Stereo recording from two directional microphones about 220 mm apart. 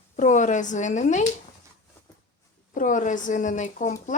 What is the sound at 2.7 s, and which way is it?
Speech, 35° left (ahead or behind).